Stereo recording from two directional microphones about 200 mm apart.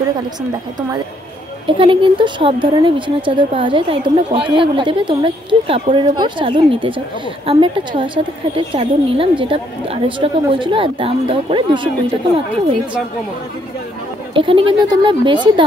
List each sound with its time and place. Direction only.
1.7 s speech: 25° right (ahead or behind)
14.3 s speech: 25° right (ahead or behind)